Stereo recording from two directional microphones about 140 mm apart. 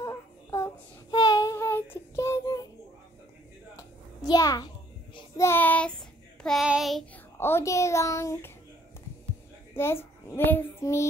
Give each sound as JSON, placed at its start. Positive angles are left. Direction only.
{"t": 0.0, "sound": "child singing", "side_deg": 20}
{"t": 3.7, "sound": "a sound", "side_deg": 25}
{"t": 5.4, "sound": "child singing", "side_deg": 15}
{"t": 7.3, "sound": "a child's voice", "side_deg": 15}
{"t": 9.8, "sound": "a child's voice", "side_deg": 15}